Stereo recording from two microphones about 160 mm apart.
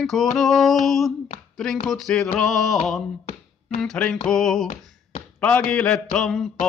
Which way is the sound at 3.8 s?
5° left (ahead or behind).